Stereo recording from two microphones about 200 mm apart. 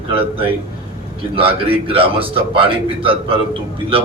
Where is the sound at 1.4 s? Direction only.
25° right (ahead or behind).